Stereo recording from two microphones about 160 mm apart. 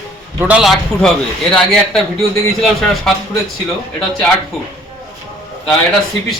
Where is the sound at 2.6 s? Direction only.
Centre (ahead or behind).